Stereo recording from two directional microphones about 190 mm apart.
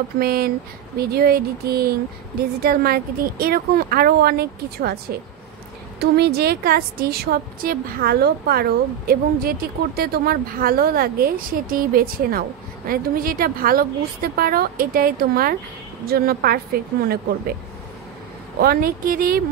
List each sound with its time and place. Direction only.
0.2 s a woman's voice: 50° right (ahead or behind)
18.6 s a woman's voice: 50° right (ahead or behind)